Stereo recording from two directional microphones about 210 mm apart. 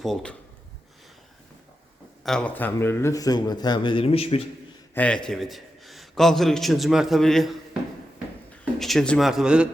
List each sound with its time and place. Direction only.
0.0 s speech: 5° left (ahead or behind)
2.2 s a man's voice: 5° left (ahead or behind); by 4.4 s 30° left (ahead or behind)
4.9 s a man's voice: 5° left (ahead or behind)
8.8 s speech: centre (ahead or behind)